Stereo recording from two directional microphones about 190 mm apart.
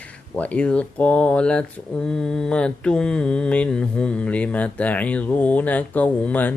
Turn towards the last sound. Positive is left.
turn(degrees=10)  # may be behind; listen again after turning